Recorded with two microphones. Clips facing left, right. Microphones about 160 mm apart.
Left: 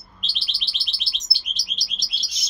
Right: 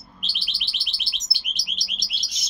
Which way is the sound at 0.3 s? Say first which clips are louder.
Left 3 dB; 15° right (ahead or behind).